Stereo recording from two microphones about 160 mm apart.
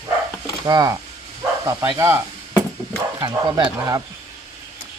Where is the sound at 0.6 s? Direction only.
25° right (ahead or behind).